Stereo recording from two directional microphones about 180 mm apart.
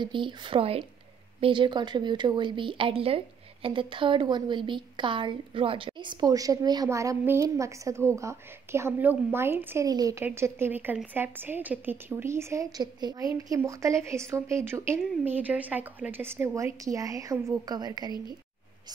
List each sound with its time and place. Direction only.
0.0 s a woman's voice: 25° right (ahead or behind)